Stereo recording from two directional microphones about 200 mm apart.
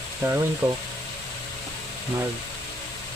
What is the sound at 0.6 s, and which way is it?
Speech, 10° right (ahead or behind).